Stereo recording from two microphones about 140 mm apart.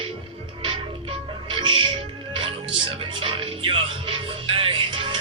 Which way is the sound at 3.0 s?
40° right (ahead or behind).